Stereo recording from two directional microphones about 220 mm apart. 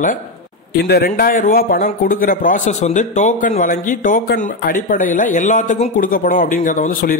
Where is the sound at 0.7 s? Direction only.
45° left (ahead or behind).